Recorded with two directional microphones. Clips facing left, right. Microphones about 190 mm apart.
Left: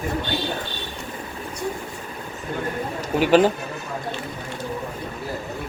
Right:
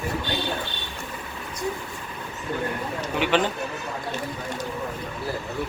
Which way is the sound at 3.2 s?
40° left (ahead or behind).